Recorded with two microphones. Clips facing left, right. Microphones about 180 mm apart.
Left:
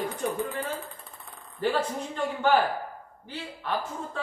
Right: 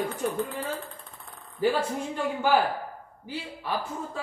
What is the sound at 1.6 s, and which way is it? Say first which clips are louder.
Speech: right 2 dB; 10° right (ahead or behind).